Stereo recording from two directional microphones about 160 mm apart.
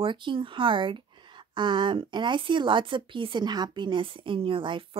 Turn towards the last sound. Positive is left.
turn(degrees=-30)  # may be behind; listen again after turning